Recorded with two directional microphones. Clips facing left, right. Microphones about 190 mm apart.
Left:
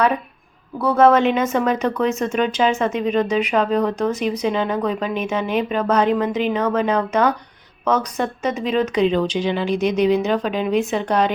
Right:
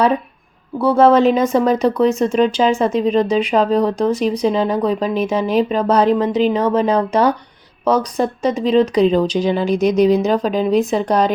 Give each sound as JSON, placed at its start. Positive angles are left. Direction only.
{"t": 0.8, "sound": "speech", "side_deg": -30}